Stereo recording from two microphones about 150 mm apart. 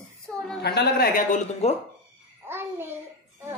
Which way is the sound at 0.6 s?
90° left.